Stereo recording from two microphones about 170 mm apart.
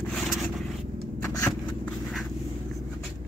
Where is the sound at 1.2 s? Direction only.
15° left (ahead or behind).